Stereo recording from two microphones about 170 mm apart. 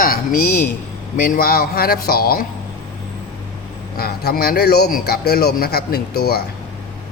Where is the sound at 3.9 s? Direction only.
65° left (ahead or behind).